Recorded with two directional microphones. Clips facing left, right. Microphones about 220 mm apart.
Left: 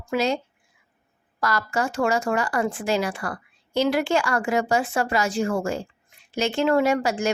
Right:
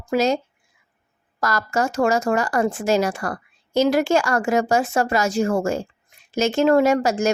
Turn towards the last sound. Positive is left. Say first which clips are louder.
# right 4 dB
turn(degrees=-45)  # may be behind; listen again after turning